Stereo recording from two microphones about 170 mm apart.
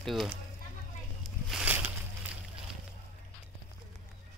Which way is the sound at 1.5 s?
5° right (ahead or behind).